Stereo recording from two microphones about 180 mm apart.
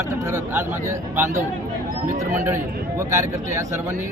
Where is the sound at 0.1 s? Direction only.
15° right (ahead or behind).